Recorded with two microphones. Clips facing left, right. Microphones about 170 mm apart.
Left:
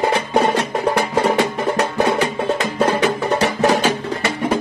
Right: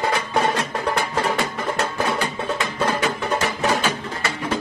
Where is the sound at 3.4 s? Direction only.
40° left (ahead or behind).